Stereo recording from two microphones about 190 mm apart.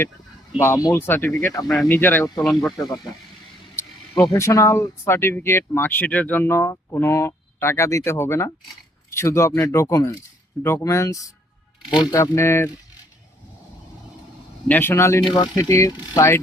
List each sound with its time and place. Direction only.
0.6 s speech: 15° left (ahead or behind)
2.4 s speech: centre (ahead or behind)
2.7 s speech: 20° left (ahead or behind)
4.4 s speech: 15° left (ahead or behind)
14.7 s speech: 10° left (ahead or behind)